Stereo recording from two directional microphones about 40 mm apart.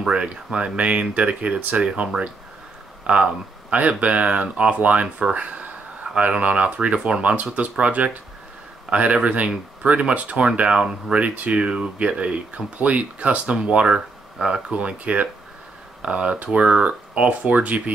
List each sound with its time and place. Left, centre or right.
0.0 s speech: right
11.1 s speech: right
13.6 s speech: right